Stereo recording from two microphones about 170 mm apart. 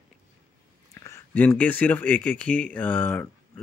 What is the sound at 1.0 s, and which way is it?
Speech, 15° left (ahead or behind).